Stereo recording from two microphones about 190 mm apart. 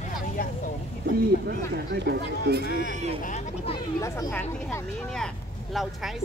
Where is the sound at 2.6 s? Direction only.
60° left (ahead or behind).